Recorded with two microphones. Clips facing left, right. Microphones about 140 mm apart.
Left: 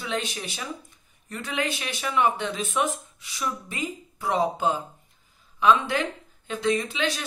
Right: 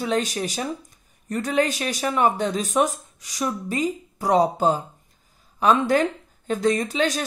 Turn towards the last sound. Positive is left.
turn(degrees=-40)  # may be behind; listen again after turning